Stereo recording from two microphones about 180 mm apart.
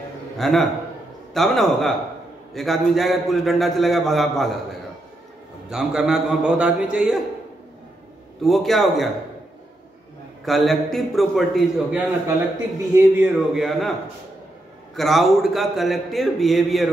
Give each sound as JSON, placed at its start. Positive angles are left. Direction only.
{"t": 0.4, "sound": "a man's voice", "side_deg": 0}
{"t": 5.7, "sound": "a man's voice", "side_deg": -5}
{"t": 8.4, "sound": "a man's voice", "side_deg": 0}
{"t": 10.4, "sound": "a man's voice", "side_deg": 0}
{"t": 12.9, "sound": "a man's voice", "side_deg": -10}
{"t": 13.6, "sound": "a man's voice", "side_deg": 0}
{"t": 15.0, "sound": "a man's voice", "side_deg": 0}